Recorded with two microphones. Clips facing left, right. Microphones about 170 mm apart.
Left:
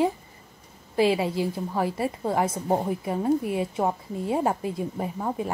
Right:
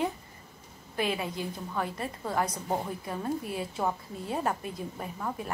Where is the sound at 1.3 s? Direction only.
90° left.